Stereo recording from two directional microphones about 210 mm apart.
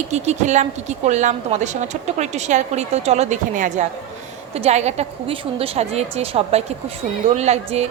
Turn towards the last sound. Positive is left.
turn(degrees=-30)  # may be behind; listen again after turning